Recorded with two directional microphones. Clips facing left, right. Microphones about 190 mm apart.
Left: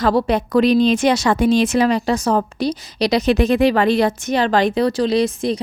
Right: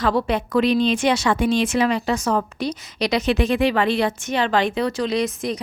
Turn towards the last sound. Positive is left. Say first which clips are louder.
# left 5 dB
turn(degrees=30)  # may be behind; listen again after turning